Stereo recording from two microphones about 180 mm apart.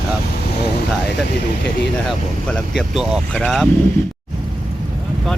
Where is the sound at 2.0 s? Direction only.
5° left (ahead or behind).